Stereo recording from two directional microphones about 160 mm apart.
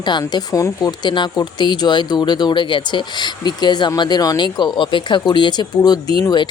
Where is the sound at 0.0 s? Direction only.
25° left (ahead or behind).